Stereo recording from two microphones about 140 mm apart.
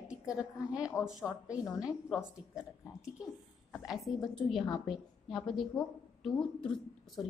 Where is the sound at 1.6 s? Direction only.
25° left (ahead or behind).